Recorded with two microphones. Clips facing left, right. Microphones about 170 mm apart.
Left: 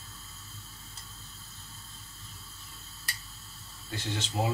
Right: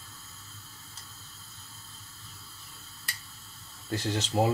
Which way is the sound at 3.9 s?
40° right (ahead or behind).